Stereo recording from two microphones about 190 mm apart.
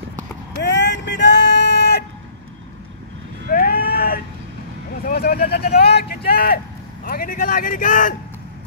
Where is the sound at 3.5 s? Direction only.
50° left (ahead or behind).